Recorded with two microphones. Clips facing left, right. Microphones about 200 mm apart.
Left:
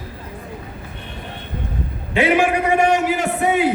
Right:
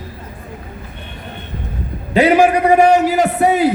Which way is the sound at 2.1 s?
40° right (ahead or behind).